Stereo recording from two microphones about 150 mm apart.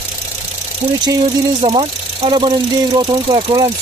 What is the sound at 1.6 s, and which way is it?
Speech, 40° right (ahead or behind).